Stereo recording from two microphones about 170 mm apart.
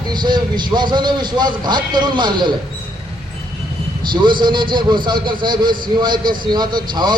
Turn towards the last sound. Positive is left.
turn(degrees=-25)  # may be behind; listen again after turning